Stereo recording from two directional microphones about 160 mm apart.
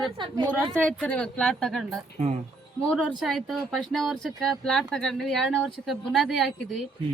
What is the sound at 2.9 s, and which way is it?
Speech, 5° left (ahead or behind).